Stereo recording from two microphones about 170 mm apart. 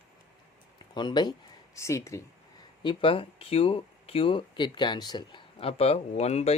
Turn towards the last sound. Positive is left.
turn(degrees=40)  # may be behind; listen again after turning